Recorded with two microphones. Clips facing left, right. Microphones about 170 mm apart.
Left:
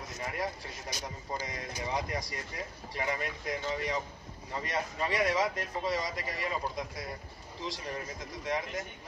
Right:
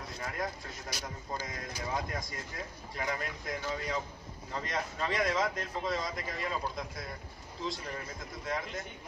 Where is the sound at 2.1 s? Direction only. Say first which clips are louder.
Left 2 dB; 80° left.